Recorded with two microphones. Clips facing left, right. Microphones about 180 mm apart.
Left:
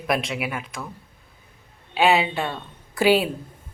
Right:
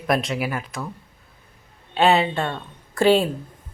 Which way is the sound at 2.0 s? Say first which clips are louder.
Right 1 dB; centre (ahead or behind).